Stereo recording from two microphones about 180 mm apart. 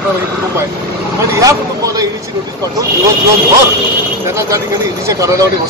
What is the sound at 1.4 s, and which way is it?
Vehicle, 20° right (ahead or behind).